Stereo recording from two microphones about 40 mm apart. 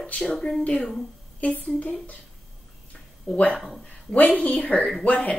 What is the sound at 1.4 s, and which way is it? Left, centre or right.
Speech, left.